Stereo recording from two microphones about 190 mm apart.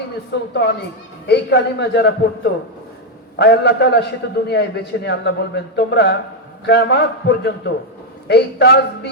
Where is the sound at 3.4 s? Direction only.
65° left (ahead or behind).